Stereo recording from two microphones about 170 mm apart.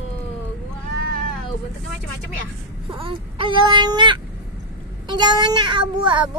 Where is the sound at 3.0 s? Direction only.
30° right (ahead or behind).